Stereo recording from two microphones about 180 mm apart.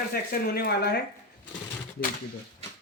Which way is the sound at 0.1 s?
60° left (ahead or behind).